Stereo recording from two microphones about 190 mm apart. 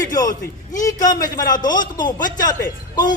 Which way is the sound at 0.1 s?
20° left (ahead or behind).